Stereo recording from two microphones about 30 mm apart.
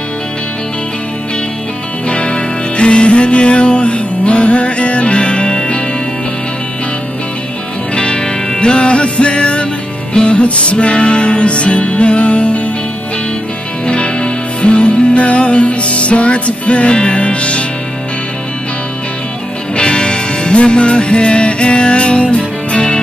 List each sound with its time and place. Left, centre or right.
2.0 s music: left
7.9 s music: left
10.4 s music: left
13.8 s music: left
19.7 s music: left